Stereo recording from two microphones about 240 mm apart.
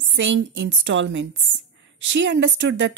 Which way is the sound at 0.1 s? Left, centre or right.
Right.